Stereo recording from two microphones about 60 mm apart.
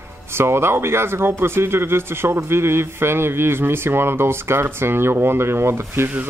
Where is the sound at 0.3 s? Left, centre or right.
Right.